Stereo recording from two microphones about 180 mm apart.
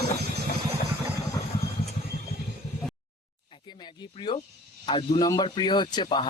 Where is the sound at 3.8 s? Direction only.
25° left (ahead or behind).